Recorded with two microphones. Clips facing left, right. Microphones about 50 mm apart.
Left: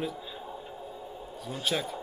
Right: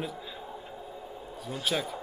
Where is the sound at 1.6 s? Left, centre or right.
Centre.